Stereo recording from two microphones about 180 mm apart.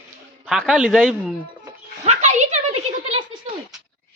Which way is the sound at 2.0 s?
40° right (ahead or behind).